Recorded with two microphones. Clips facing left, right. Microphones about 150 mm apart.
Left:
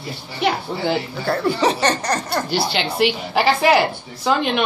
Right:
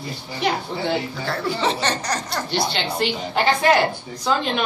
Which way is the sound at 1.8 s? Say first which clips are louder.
Left 4 dB; 55° left (ahead or behind).